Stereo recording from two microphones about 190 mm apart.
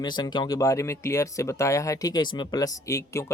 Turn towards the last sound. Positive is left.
turn(degrees=15)  # may be behind; listen again after turning